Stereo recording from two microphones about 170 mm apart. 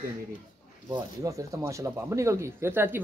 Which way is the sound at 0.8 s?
20° right (ahead or behind).